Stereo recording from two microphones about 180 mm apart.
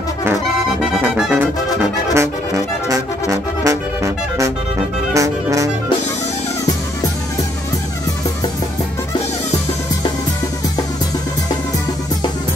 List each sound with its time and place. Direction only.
0.9 s music: 5° right (ahead or behind)
2.1 s music: 20° right (ahead or behind)